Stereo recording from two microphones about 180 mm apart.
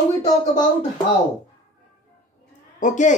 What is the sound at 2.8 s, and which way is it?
Speech, 45° left (ahead or behind).